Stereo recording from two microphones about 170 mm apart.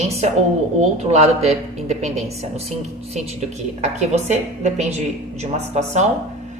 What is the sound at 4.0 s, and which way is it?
A woman's voice, 40° right (ahead or behind).